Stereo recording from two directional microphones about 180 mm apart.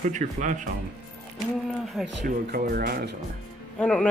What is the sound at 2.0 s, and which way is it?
Speech, centre (ahead or behind).